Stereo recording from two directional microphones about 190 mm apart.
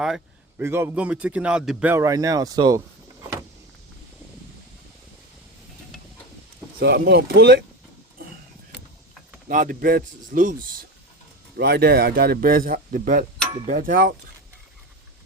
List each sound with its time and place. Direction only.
0.6 s a man's voice: 10° right (ahead or behind)
6.7 s speech: 55° right (ahead or behind)
9.5 s speech: 45° right (ahead or behind)